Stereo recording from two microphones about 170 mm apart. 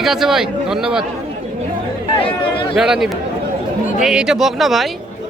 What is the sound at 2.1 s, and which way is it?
Speech, 30° left (ahead or behind).